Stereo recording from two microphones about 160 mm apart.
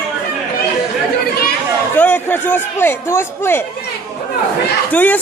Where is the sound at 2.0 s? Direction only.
10° left (ahead or behind).